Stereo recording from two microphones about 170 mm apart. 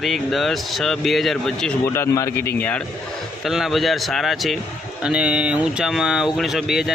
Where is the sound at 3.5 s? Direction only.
Centre (ahead or behind).